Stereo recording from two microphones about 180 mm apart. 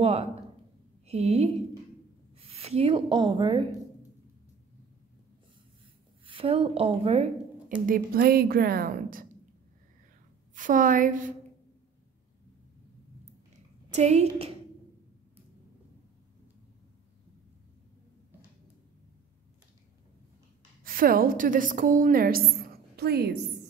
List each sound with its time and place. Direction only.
0.0 s a woman's voice: 35° right (ahead or behind)
6.2 s a woman's voice: 30° right (ahead or behind)
7.8 s a woman's voice: 50° right (ahead or behind)
10.5 s a woman's voice: 45° right (ahead or behind)
13.8 s a woman's voice: 40° right (ahead or behind)
20.8 s a woman's voice: 55° right (ahead or behind)